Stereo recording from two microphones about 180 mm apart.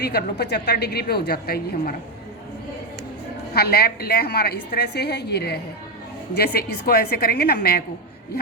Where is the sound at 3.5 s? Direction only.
60° left (ahead or behind).